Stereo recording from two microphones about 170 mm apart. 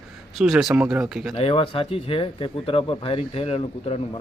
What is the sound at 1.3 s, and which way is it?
Speech, 35° left (ahead or behind).